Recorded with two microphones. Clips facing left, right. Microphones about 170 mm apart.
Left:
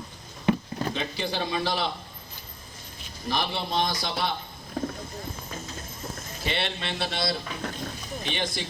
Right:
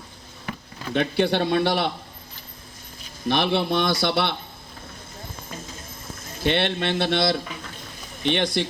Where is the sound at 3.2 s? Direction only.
65° right (ahead or behind).